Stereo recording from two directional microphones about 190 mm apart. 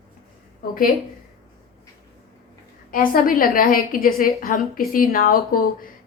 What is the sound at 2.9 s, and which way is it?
A woman's voice, 45° left (ahead or behind).